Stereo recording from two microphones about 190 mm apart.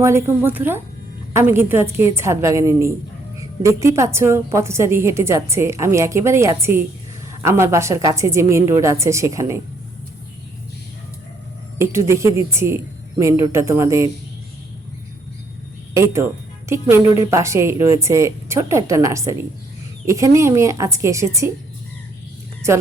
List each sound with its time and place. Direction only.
0.0 s a woman's voice: 15° right (ahead or behind)
11.8 s a woman's voice: 15° right (ahead or behind)
16.0 s a woman's voice: 15° right (ahead or behind)